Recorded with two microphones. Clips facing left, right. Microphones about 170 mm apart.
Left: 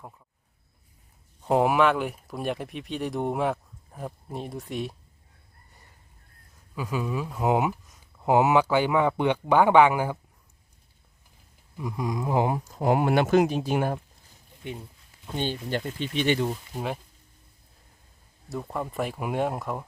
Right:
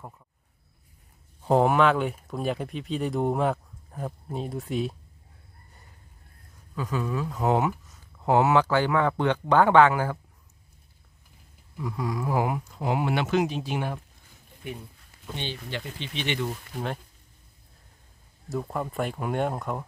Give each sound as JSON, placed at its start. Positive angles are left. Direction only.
{"t": 1.4, "sound": "speech", "side_deg": 5}
{"t": 6.7, "sound": "speech", "side_deg": 10}
{"t": 11.8, "sound": "speech", "side_deg": 20}
{"t": 15.4, "sound": "speech", "side_deg": 45}
{"t": 18.4, "sound": "speech", "side_deg": 0}